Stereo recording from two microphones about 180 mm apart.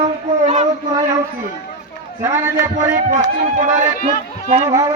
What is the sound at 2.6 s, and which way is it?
Speech, 45° right (ahead or behind).